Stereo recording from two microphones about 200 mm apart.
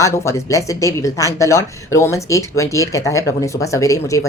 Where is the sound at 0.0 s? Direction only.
15° left (ahead or behind).